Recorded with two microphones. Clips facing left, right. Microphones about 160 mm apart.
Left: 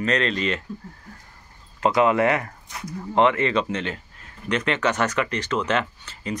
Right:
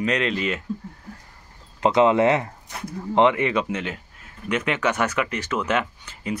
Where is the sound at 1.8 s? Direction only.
20° right (ahead or behind).